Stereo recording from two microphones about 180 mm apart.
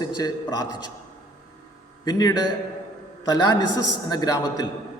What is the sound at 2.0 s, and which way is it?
A man's voice, 20° left (ahead or behind).